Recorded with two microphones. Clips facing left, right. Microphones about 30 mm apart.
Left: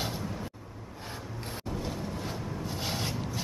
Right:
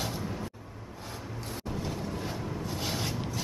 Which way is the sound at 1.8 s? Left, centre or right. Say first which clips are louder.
Right 1 dB; centre.